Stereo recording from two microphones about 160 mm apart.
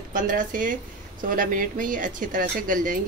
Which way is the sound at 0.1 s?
60° right (ahead or behind).